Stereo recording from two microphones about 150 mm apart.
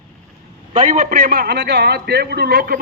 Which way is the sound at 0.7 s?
55° right (ahead or behind).